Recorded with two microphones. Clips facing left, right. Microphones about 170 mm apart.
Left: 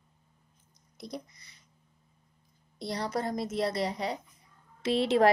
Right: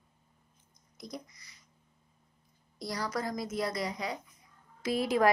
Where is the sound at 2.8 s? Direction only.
30° left (ahead or behind).